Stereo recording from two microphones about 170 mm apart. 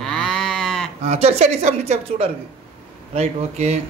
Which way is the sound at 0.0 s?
5° left (ahead or behind).